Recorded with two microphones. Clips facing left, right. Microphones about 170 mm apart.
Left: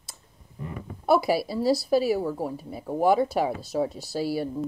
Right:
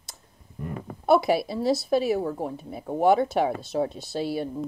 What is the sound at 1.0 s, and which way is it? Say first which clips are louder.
Speech: right 1 dB; 5° left (ahead or behind).